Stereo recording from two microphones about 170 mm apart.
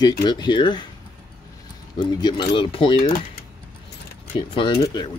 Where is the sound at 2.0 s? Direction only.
25° left (ahead or behind).